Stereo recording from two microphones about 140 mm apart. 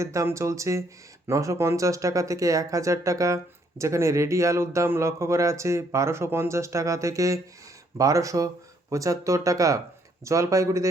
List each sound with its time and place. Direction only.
0.0 s speech: 20° right (ahead or behind)